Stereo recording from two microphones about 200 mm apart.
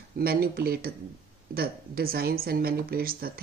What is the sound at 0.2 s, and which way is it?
Speech, 50° right (ahead or behind).